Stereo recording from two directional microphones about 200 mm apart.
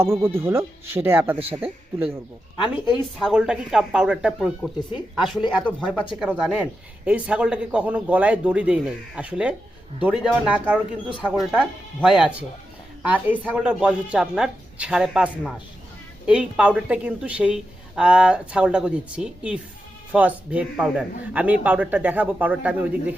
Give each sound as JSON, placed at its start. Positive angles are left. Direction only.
{"t": 0.2, "sound": "speech", "side_deg": -10}
{"t": 2.6, "sound": "speech", "side_deg": 25}
{"t": 2.9, "sound": "a woman's voice", "side_deg": -5}
{"t": 4.9, "sound": "speech", "side_deg": 25}
{"t": 5.8, "sound": "a woman's voice", "side_deg": 5}